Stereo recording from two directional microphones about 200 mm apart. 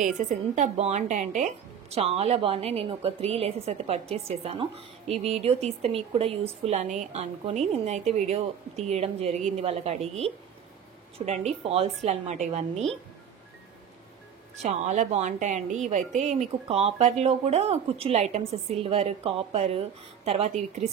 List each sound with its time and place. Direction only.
0.0 s speech: 35° right (ahead or behind)
14.6 s speech: 35° right (ahead or behind)